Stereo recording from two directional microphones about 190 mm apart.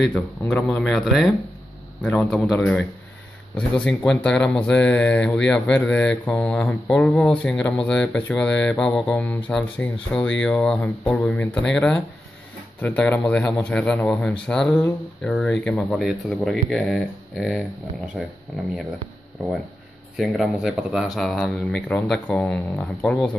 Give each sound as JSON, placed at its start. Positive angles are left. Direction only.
{"t": 0.4, "sound": "speech", "side_deg": 15}
{"t": 0.7, "sound": "speech", "side_deg": 0}
{"t": 20.2, "sound": "speech", "side_deg": 0}